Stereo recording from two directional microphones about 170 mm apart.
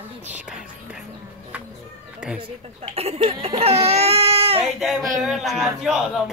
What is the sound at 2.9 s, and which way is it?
Speech, 35° right (ahead or behind).